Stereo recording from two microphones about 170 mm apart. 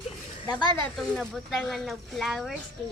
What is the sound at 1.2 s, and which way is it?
Speech, centre (ahead or behind).